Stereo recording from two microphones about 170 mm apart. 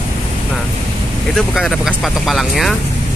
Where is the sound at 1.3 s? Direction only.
Centre (ahead or behind).